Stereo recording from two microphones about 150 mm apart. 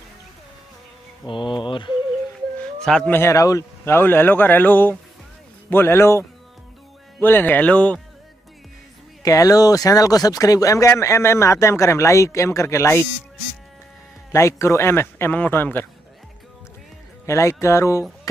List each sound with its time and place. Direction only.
1.2 s speech: 35° left (ahead or behind)
2.8 s speech: 5° left (ahead or behind)
9.2 s speech: 25° left (ahead or behind)
14.3 s speech: 20° left (ahead or behind)
17.3 s speech: 20° left (ahead or behind)